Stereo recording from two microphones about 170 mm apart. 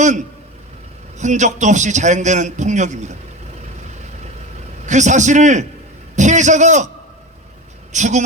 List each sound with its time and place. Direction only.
1.2 s a man's voice: 45° right (ahead or behind)
4.9 s a man's voice: 45° right (ahead or behind)
7.9 s a man's voice: 45° right (ahead or behind)